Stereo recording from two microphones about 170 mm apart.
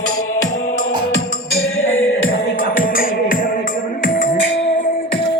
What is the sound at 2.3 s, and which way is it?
Music, 55° left (ahead or behind).